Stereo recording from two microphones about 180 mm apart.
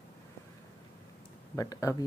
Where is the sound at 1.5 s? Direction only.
20° left (ahead or behind).